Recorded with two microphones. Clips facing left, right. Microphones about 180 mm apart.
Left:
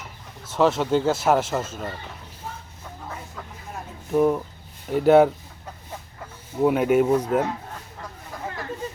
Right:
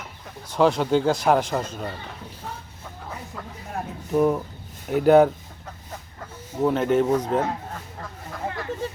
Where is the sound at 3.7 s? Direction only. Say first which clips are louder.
Right 7 dB; 55° right (ahead or behind).